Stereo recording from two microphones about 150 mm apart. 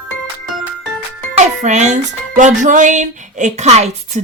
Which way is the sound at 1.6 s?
50° right (ahead or behind).